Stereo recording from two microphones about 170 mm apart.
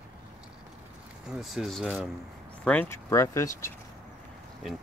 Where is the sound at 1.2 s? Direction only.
Centre (ahead or behind).